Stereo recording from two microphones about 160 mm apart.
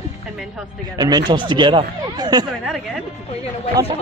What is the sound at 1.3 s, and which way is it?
Speech, 30° right (ahead or behind).